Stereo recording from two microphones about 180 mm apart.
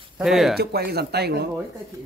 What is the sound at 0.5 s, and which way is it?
Speech, 60° right (ahead or behind).